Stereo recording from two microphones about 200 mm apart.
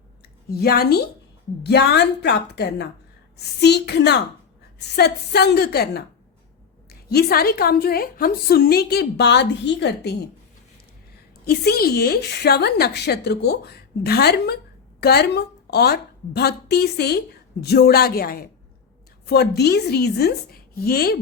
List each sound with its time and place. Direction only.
0.5 s a woman's voice: 50° left (ahead or behind)
7.1 s a woman's voice: 50° left (ahead or behind)
11.4 s a woman's voice: 50° left (ahead or behind)